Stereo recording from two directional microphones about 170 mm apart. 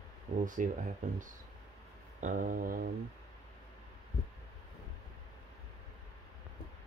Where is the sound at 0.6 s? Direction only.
50° right (ahead or behind).